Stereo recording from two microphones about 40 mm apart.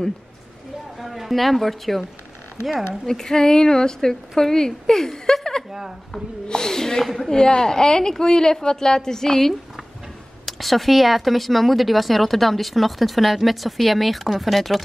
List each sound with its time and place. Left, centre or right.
0.9 s a woman's voice: centre
3.1 s a woman's voice: centre
5.7 s speech: centre
6.4 s a woman's voice: centre